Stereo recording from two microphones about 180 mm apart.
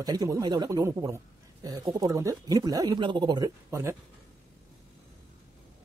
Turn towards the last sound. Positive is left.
turn(degrees=-15)  # may be behind; listen again after turning